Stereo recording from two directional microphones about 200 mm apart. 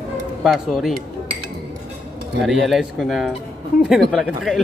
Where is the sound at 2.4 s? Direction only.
Centre (ahead or behind).